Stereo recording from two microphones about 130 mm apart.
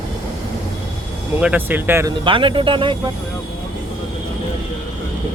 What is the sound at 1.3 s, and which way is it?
Speech, 15° right (ahead or behind).